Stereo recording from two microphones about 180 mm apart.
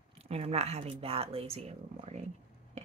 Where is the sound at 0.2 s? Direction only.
35° right (ahead or behind).